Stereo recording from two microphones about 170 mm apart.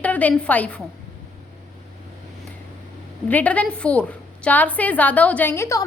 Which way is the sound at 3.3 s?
10° left (ahead or behind).